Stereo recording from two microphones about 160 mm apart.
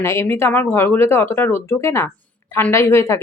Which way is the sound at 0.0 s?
15° left (ahead or behind).